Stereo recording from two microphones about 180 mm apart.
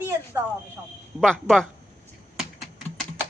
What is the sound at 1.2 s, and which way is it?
Speech, 5° left (ahead or behind).